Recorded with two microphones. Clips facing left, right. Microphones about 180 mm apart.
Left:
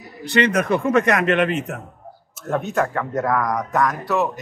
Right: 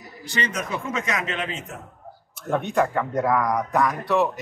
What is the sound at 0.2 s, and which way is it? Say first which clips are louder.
Speech: left 10 dB; 65° left (ahead or behind).